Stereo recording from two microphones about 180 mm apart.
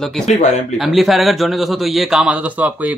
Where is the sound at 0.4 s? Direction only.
40° left (ahead or behind).